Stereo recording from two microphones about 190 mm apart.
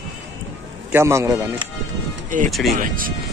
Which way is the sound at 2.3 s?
45° right (ahead or behind).